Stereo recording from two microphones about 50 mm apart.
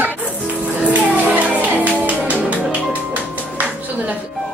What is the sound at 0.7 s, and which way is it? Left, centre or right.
Music, right.